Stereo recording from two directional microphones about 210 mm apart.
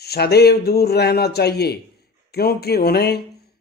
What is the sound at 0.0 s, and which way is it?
Speech, 50° left (ahead or behind).